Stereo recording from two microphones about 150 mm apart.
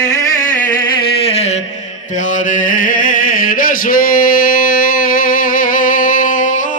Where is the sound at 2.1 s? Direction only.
60° left (ahead or behind).